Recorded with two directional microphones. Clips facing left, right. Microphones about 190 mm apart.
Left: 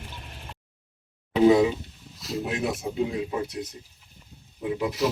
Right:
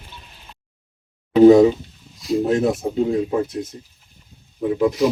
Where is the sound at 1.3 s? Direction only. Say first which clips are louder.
Right 8 dB; 45° right (ahead or behind).